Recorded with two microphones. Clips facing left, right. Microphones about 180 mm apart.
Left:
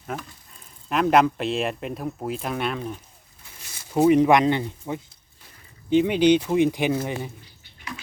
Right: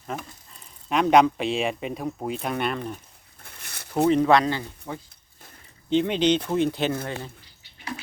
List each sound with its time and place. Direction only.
0.9 s speech: centre (ahead or behind)
3.4 s a sound: 65° right (ahead or behind)
3.9 s speech: 15° left (ahead or behind)
5.9 s speech: 10° left (ahead or behind)